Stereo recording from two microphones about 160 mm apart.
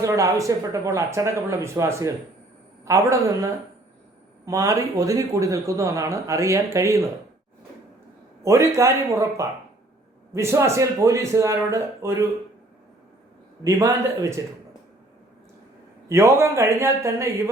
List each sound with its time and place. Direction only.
0.0 s speech: 20° right (ahead or behind)
8.4 s speech: 15° right (ahead or behind)
13.7 s speech: 20° right (ahead or behind)
16.0 s speech: 15° right (ahead or behind)